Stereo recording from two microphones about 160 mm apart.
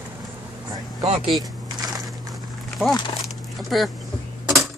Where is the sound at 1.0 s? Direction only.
40° right (ahead or behind).